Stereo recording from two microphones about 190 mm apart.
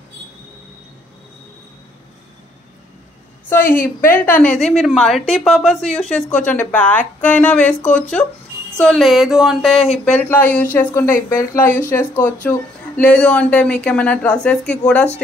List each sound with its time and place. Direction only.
3.4 s a woman's voice: 10° left (ahead or behind)